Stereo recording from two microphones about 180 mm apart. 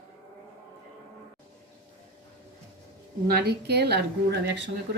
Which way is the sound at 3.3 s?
60° right (ahead or behind).